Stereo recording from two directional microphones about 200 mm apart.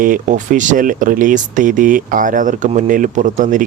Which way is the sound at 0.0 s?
40° right (ahead or behind).